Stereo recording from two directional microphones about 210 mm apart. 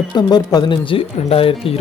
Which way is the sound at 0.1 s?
20° left (ahead or behind).